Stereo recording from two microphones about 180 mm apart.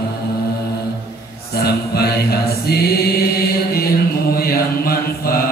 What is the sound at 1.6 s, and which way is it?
Chant, 60° left (ahead or behind).